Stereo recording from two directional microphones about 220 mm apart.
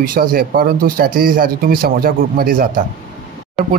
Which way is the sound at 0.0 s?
40° right (ahead or behind).